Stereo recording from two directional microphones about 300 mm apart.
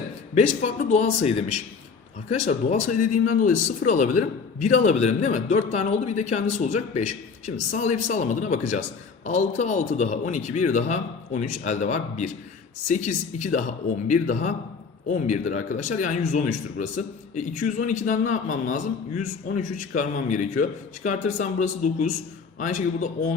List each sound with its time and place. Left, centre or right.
0.3 s speech: left